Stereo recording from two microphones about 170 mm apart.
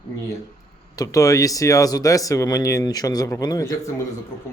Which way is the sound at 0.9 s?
20° left (ahead or behind).